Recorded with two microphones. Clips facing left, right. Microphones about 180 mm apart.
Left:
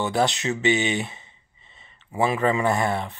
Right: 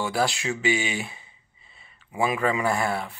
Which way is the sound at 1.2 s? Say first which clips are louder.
Left 2 dB; 5° right (ahead or behind).